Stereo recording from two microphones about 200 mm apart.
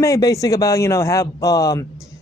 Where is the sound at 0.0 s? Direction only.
15° left (ahead or behind).